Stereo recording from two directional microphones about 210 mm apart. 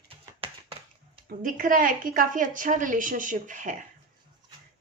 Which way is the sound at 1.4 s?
40° right (ahead or behind).